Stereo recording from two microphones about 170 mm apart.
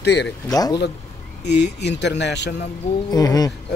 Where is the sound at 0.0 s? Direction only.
80° left.